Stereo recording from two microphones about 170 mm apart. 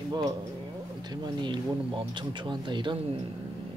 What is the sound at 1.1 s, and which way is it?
Speech, 25° right (ahead or behind).